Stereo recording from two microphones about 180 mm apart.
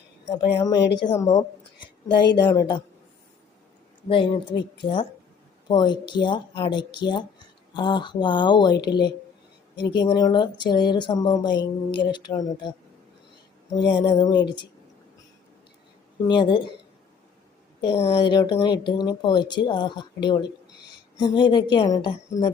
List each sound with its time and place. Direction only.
0.3 s speech: 20° left (ahead or behind)
4.1 s speech: 30° left (ahead or behind)
13.7 s speech: 25° left (ahead or behind)
16.2 s speech: 25° left (ahead or behind)
17.7 s speech: 30° left (ahead or behind)